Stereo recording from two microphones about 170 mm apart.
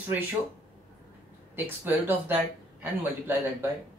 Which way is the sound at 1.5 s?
10° right (ahead or behind).